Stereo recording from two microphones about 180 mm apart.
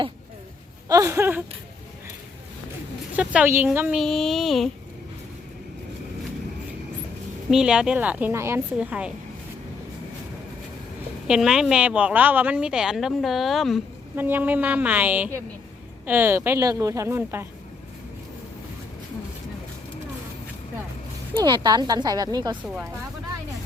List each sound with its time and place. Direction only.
0.9 s a woman's voice: 15° right (ahead or behind)
3.2 s a woman's voice: 10° right (ahead or behind)
7.5 s a woman's voice: 5° right (ahead or behind)
11.3 s a woman's voice: 5° right (ahead or behind)
14.2 s a woman's voice: 10° right (ahead or behind)
21.3 s speech: 25° right (ahead or behind)